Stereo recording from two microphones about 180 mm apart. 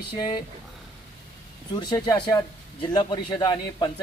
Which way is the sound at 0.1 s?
25° left (ahead or behind).